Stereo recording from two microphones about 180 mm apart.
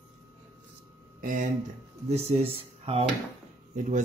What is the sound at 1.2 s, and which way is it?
Speech, 50° right (ahead or behind).